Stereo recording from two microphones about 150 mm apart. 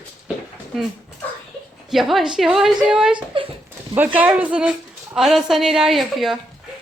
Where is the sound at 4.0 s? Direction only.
10° right (ahead or behind).